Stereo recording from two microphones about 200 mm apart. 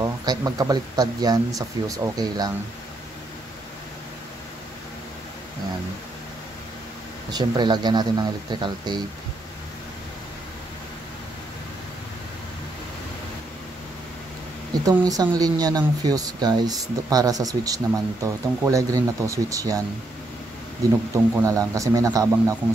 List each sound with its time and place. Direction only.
0.0 s speech: 20° right (ahead or behind)
7.2 s speech: 20° right (ahead or behind)
14.7 s speech: 20° right (ahead or behind)
21.4 s speech: 15° right (ahead or behind)